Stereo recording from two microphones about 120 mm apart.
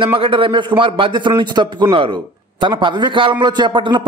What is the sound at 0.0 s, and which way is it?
A man's voice, 45° right (ahead or behind).